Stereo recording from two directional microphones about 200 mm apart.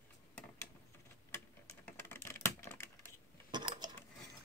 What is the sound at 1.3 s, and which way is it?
Typing, 10° left (ahead or behind).